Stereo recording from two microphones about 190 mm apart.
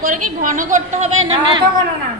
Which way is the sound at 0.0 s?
45° right (ahead or behind).